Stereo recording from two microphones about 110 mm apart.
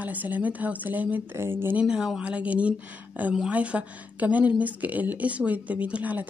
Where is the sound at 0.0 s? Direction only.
15° right (ahead or behind).